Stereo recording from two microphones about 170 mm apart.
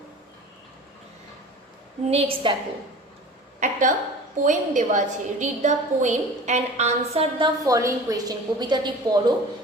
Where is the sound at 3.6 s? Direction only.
50° right (ahead or behind).